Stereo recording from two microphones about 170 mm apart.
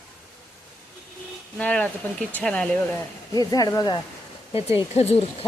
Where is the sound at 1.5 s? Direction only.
5° left (ahead or behind).